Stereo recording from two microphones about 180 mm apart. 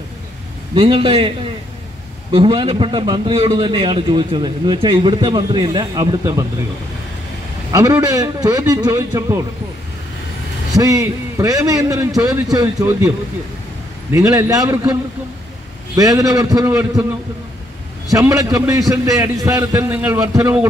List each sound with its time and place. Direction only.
0.7 s a man's voice: 25° right (ahead or behind)
2.3 s a man's voice: 30° right (ahead or behind)
7.7 s a man's voice: 20° right (ahead or behind)
10.8 s a man's voice: 20° right (ahead or behind)
14.1 s a man's voice: 20° right (ahead or behind)
16.0 s a man's voice: 20° right (ahead or behind)
18.1 s a man's voice: 20° right (ahead or behind)